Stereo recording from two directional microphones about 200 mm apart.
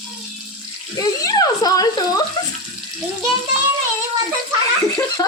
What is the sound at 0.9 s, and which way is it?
Speech, 15° left (ahead or behind).